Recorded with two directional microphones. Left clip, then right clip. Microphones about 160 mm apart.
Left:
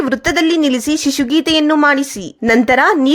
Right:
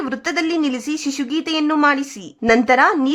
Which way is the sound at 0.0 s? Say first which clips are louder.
Left 7 dB; 20° left (ahead or behind).